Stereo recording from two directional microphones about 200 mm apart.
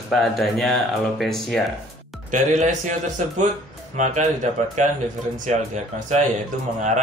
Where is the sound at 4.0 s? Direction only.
35° right (ahead or behind).